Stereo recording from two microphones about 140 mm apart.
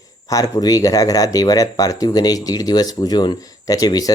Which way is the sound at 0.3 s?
25° left (ahead or behind).